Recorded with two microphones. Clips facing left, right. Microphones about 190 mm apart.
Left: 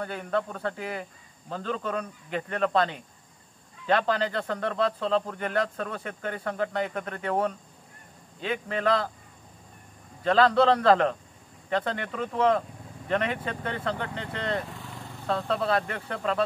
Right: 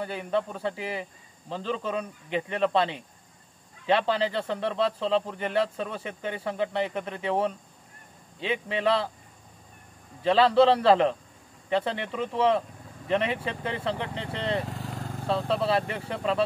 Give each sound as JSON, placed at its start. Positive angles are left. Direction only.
{"t": 0.0, "sound": "speech", "side_deg": -5}
{"t": 10.2, "sound": "speech", "side_deg": -10}
{"t": 14.1, "sound": "speech", "side_deg": -30}
{"t": 15.5, "sound": "speech", "side_deg": -5}